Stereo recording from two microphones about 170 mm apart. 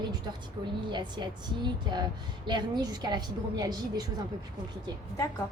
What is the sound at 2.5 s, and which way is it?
A woman's voice, 25° right (ahead or behind).